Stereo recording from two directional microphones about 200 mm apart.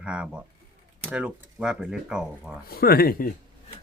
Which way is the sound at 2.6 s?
50° left (ahead or behind).